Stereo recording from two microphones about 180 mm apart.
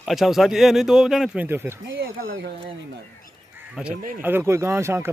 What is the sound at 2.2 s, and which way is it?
Speech, 55° right (ahead or behind).